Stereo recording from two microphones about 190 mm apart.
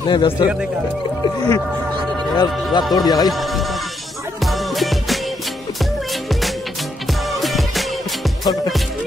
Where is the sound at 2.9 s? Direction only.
20° left (ahead or behind).